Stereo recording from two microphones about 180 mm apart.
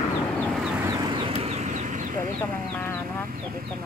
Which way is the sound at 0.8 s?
20° right (ahead or behind).